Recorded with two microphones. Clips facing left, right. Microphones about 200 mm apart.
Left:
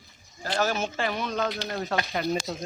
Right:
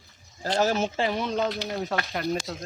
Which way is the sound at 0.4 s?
25° right (ahead or behind).